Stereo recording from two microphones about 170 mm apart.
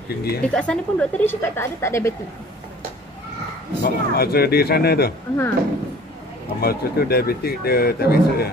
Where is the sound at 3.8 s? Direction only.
65° left (ahead or behind).